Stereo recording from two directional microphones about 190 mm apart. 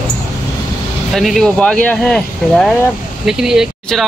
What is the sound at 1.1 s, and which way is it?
Speech, centre (ahead or behind).